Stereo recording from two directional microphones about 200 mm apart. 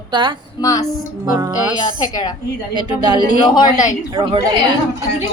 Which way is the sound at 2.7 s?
20° right (ahead or behind).